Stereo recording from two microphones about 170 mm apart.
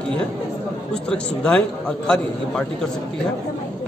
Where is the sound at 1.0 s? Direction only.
5° left (ahead or behind).